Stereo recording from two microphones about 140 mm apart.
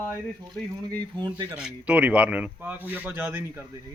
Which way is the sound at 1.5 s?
5° right (ahead or behind).